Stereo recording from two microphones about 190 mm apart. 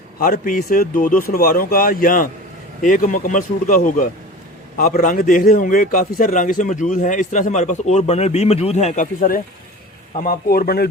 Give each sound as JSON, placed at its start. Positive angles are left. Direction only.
{"t": 0.2, "sound": "a man's voice", "side_deg": 45}